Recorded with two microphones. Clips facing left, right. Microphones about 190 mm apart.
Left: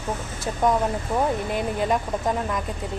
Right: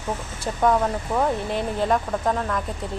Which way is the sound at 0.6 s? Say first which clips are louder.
Right 1 dB; 10° left (ahead or behind).